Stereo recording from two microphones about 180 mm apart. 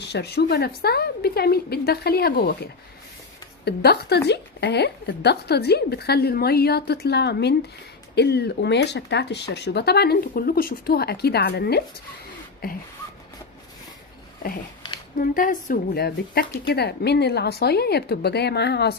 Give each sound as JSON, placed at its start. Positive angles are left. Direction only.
{"t": 0.1, "sound": "a woman's voice", "side_deg": 65}
{"t": 3.6, "sound": "a woman's voice", "side_deg": 65}
{"t": 15.2, "sound": "a woman's voice", "side_deg": 50}
{"t": 16.0, "sound": "a woman's voice", "side_deg": 60}